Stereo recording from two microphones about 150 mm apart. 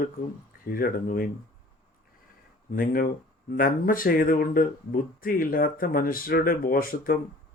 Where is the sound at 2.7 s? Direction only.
75° left (ahead or behind).